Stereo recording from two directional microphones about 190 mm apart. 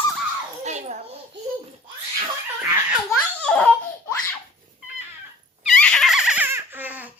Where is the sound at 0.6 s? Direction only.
35° right (ahead or behind).